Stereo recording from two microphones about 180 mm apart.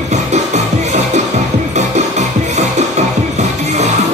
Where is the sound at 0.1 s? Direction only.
40° right (ahead or behind).